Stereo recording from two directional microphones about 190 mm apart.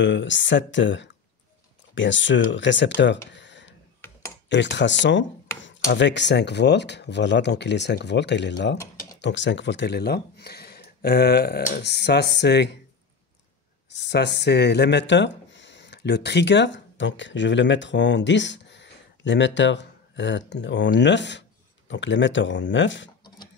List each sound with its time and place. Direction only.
0.0 s speech: 70° left (ahead or behind)
3.3 s a sound: 70° left (ahead or behind)
4.5 s speech: 70° left (ahead or behind)
13.9 s speech: 65° left (ahead or behind)